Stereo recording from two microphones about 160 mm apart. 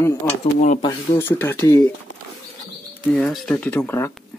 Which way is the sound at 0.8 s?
15° left (ahead or behind).